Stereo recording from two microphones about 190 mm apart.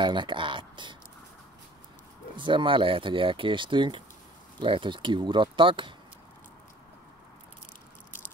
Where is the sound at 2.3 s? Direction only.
25° right (ahead or behind).